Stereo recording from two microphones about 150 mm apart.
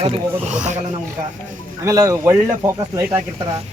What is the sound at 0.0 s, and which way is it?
Speech, 45° right (ahead or behind).